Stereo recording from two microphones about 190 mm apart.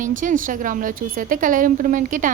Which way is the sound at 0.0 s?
45° right (ahead or behind).